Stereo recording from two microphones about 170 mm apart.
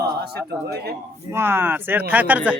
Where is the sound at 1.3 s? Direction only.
15° right (ahead or behind).